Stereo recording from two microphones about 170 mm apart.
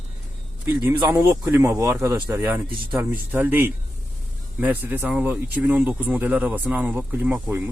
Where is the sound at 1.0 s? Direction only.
15° right (ahead or behind).